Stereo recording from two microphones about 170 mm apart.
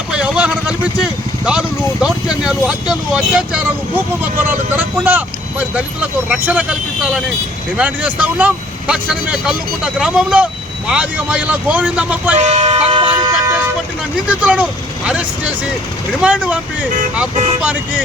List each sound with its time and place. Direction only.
0.1 s vehicle: 5° right (ahead or behind)
1.5 s speech: 5° right (ahead or behind)
12.4 s speech: 40° right (ahead or behind); by 13.5 s 25° right (ahead or behind)
14.3 s speech: 5° right (ahead or behind)
17.3 s speech: 45° right (ahead or behind)